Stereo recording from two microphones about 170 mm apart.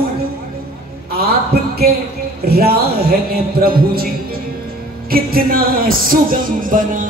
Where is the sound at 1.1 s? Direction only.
65° right (ahead or behind).